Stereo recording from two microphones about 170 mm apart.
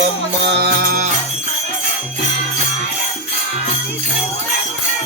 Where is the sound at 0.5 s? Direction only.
65° right (ahead or behind).